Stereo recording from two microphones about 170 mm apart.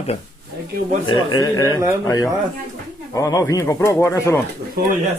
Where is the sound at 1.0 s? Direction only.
25° left (ahead or behind).